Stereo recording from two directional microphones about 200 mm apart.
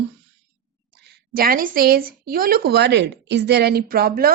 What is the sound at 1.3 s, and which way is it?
A woman's voice, 45° right (ahead or behind).